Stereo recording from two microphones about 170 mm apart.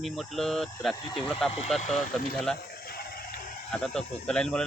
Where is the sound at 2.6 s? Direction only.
65° left (ahead or behind).